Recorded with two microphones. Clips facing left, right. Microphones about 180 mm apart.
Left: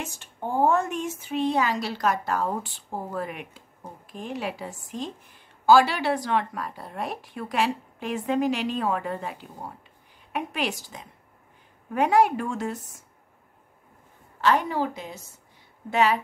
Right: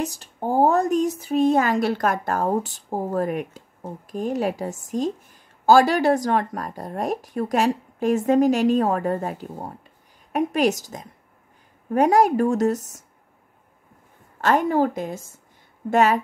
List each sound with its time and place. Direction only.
0.0 s a woman's voice: 35° right (ahead or behind)
14.4 s a woman's voice: 50° right (ahead or behind)